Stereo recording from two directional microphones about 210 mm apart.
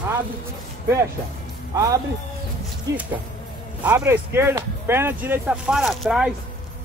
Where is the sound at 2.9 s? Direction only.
15° right (ahead or behind).